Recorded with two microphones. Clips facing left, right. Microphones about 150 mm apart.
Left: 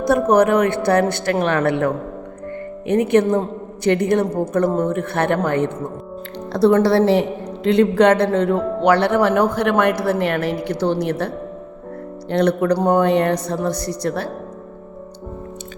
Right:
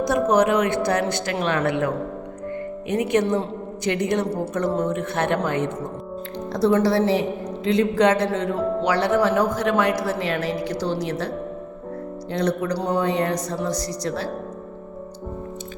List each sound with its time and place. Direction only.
0.0 s a woman's voice: 55° left (ahead or behind)
2.9 s a woman's voice: 55° left (ahead or behind)
12.3 s a woman's voice: 60° left (ahead or behind)